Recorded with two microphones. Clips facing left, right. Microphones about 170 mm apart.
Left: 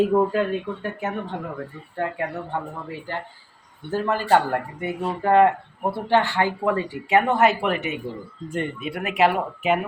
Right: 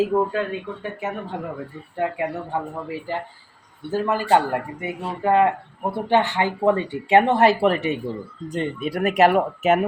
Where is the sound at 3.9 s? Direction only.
10° right (ahead or behind).